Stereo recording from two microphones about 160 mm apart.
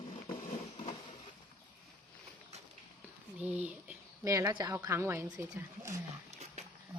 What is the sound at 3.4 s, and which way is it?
Speech, 10° right (ahead or behind).